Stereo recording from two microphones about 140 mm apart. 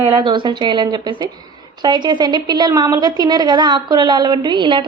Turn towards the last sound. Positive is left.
turn(degrees=-35)  # may be behind; listen again after turning